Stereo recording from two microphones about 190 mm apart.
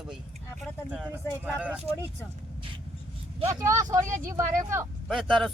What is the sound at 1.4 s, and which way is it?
Speech, 10° right (ahead or behind).